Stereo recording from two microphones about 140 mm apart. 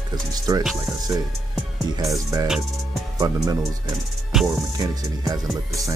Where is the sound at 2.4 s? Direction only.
5° right (ahead or behind).